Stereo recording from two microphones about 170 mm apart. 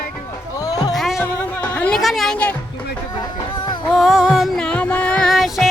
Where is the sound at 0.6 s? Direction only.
20° left (ahead or behind).